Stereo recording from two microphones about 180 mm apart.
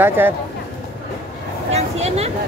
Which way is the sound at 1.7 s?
35° right (ahead or behind).